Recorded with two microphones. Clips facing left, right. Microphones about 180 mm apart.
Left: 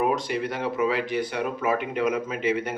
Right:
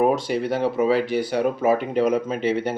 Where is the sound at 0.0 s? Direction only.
35° right (ahead or behind).